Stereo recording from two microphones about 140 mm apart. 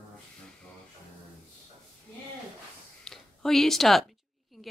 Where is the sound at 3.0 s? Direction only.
5° left (ahead or behind).